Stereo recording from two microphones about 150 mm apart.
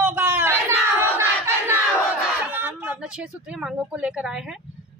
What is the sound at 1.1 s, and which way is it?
Battle cry, 15° right (ahead or behind).